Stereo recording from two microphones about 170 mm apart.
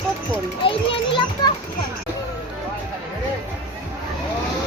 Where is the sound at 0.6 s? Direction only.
30° left (ahead or behind).